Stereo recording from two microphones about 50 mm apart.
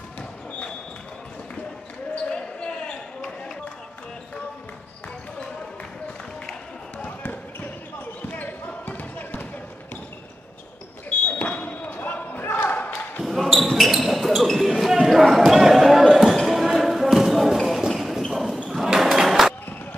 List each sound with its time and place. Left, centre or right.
2.1 s basketball bounce: centre
8.2 s basketball bounce: left
11.1 s basketball bounce: left
13.2 s basketball bounce: centre
18.3 s a sound: centre